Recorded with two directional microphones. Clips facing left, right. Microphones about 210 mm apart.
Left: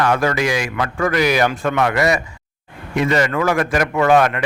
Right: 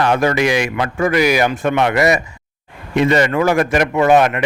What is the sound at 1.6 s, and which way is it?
A man's voice, 20° right (ahead or behind).